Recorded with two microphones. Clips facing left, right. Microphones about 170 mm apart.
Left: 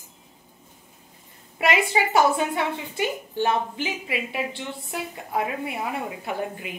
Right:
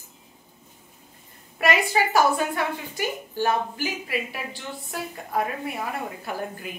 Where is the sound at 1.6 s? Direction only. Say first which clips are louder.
Even; 25° left (ahead or behind).